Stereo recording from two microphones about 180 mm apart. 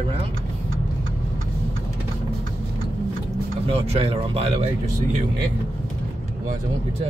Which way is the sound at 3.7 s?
35° right (ahead or behind).